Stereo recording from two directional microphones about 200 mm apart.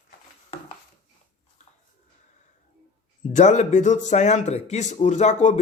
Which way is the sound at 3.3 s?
35° left (ahead or behind).